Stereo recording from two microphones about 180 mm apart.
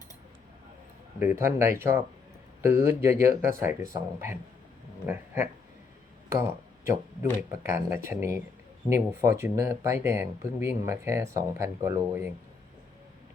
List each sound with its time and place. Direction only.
1.2 s speech: 10° right (ahead or behind)